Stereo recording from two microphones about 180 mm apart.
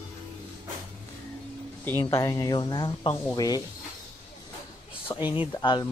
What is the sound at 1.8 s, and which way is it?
Speech, 15° left (ahead or behind).